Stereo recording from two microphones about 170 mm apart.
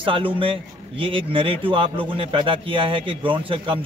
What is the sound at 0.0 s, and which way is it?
A man's voice, 30° right (ahead or behind).